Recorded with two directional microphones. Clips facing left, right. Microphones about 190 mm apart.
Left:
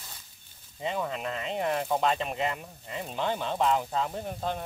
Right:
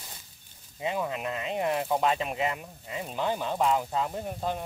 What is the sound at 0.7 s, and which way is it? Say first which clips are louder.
Speech: right 1 dB; 5° right (ahead or behind).